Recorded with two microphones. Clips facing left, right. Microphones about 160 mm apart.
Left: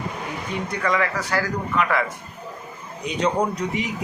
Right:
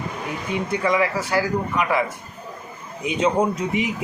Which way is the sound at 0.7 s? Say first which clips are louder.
Right 3 dB; 20° right (ahead or behind).